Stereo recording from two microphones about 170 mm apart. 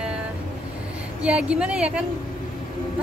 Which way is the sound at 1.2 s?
5° right (ahead or behind).